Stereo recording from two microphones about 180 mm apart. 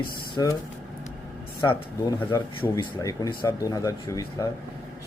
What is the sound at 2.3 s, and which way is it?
Speech, 20° left (ahead or behind).